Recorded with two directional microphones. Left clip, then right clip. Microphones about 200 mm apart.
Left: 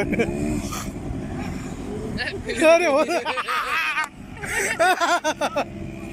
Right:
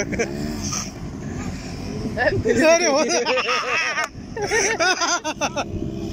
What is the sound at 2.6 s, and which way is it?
Speech, 5° left (ahead or behind).